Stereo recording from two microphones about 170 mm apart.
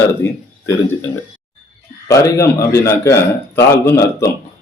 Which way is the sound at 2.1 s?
20° left (ahead or behind).